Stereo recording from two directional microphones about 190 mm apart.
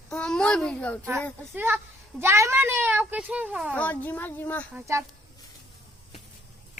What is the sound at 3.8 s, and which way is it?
Speech, 10° left (ahead or behind).